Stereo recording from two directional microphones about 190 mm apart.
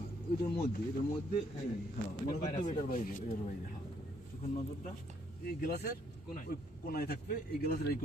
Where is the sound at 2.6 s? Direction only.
45° left (ahead or behind).